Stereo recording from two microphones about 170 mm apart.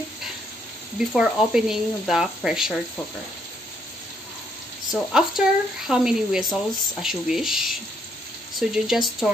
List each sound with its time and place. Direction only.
0.9 s speech: 5° right (ahead or behind)
4.9 s speech: 5° right (ahead or behind)